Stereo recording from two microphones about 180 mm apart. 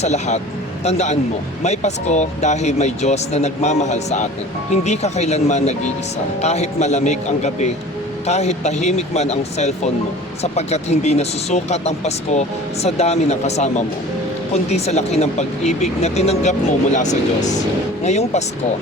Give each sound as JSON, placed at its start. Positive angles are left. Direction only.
{"t": 0.0, "sound": "speech", "side_deg": 40}